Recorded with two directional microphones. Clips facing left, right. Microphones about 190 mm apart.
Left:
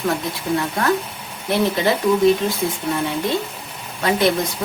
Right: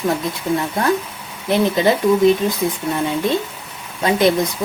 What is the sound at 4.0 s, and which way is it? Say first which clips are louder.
Speech: right 2 dB; 20° right (ahead or behind).